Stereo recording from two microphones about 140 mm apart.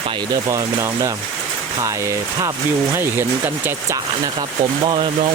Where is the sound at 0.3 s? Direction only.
25° right (ahead or behind).